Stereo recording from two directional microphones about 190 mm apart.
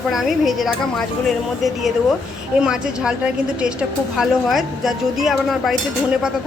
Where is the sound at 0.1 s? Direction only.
Centre (ahead or behind).